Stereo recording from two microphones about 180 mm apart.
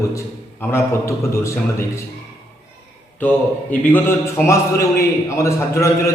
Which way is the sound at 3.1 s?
10° left (ahead or behind).